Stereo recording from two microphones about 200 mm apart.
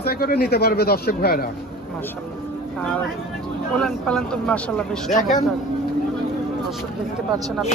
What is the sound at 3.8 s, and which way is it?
Speech, 5° left (ahead or behind).